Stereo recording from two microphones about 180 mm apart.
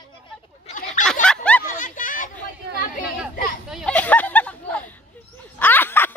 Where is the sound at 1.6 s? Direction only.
45° left (ahead or behind).